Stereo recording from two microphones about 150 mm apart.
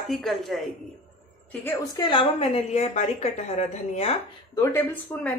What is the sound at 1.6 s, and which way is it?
A woman's voice, 20° left (ahead or behind).